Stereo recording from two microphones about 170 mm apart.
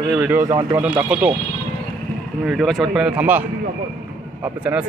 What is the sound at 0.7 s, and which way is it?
Speech, 5° right (ahead or behind).